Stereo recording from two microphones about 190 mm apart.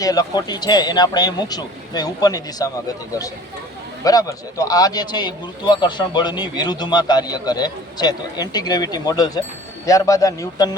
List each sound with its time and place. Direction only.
0.0 s speech: 20° left (ahead or behind)
4.0 s speech: 20° left (ahead or behind)